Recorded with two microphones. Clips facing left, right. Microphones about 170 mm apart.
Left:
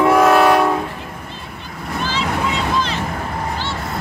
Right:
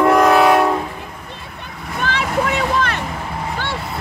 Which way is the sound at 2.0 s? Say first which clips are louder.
Right 2 dB; 60° right (ahead or behind).